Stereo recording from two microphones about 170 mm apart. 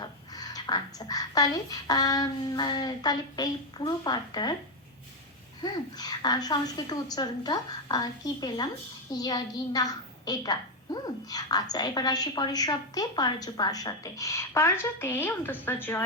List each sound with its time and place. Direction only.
0.0 s a woman's voice: 20° left (ahead or behind)
5.6 s a woman's voice: 25° left (ahead or behind)